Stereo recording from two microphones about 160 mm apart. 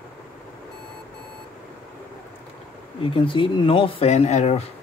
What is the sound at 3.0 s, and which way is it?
Speech, 35° left (ahead or behind).